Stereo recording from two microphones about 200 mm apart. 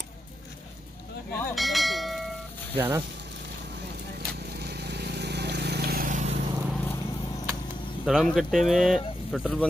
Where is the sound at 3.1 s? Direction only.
60° right (ahead or behind); by 6.4 s 40° right (ahead or behind).